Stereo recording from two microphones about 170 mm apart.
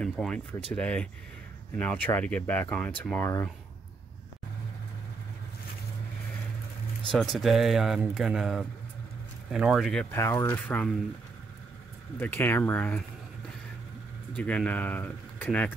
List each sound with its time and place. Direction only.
0.0 s speech: 5° left (ahead or behind)
7.3 s speech: centre (ahead or behind)
10.1 s speech: 15° left (ahead or behind)
12.2 s speech: 15° left (ahead or behind)
14.3 s speech: 10° left (ahead or behind)